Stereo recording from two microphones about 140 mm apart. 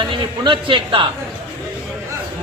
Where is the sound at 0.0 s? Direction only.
35° right (ahead or behind).